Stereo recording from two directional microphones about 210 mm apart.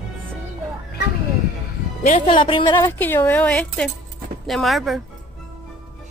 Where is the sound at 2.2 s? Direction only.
25° left (ahead or behind).